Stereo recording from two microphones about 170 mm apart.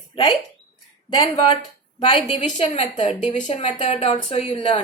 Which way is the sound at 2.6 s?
45° left (ahead or behind).